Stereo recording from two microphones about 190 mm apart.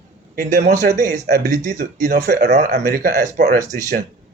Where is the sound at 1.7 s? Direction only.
55° right (ahead or behind).